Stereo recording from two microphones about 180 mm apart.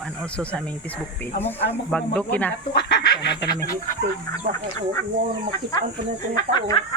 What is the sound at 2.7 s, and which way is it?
Speech, 65° left (ahead or behind).